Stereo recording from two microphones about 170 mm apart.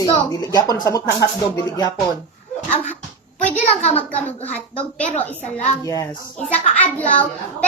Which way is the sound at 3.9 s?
10° left (ahead or behind).